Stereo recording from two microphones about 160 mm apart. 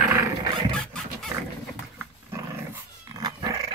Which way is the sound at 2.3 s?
15° right (ahead or behind).